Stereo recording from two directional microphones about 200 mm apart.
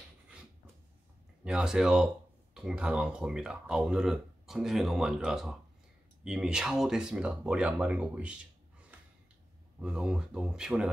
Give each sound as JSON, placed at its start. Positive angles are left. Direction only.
{"t": 1.4, "sound": "speech", "side_deg": -5}
{"t": 9.8, "sound": "speech", "side_deg": -5}